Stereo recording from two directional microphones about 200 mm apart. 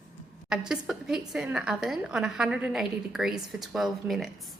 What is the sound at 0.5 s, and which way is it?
A woman's voice, 5° right (ahead or behind).